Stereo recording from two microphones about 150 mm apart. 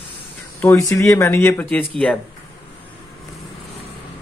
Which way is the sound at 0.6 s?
15° left (ahead or behind).